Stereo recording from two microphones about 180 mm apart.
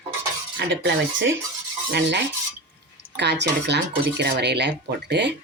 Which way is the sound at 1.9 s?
75° right (ahead or behind).